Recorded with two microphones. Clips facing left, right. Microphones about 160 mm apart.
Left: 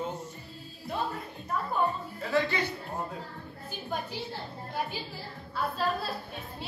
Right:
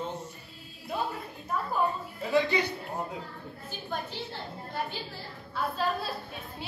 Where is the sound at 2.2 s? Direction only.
15° right (ahead or behind).